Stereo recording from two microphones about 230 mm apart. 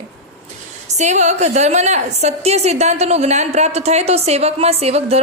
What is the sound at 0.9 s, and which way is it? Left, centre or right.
A woman's voice, right.